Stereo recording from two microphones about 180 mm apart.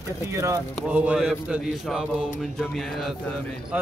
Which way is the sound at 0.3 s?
15° right (ahead or behind).